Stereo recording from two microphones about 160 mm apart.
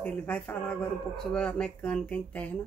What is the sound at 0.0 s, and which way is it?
Speech, 10° left (ahead or behind).